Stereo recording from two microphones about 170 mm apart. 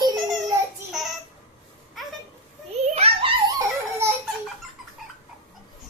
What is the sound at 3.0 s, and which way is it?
Giggle, 35° right (ahead or behind).